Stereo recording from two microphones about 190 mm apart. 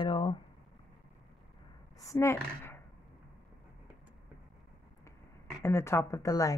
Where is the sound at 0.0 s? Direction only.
25° left (ahead or behind).